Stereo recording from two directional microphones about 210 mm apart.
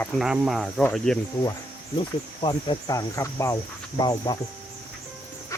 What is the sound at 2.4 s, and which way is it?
Speech, 20° left (ahead or behind).